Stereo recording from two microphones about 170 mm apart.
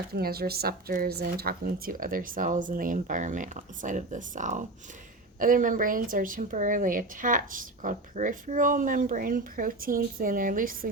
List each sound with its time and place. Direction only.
0.1 s a woman's voice: 65° right (ahead or behind)